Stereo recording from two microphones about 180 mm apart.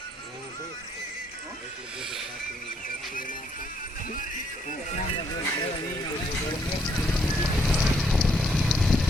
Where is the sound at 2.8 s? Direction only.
50° left (ahead or behind).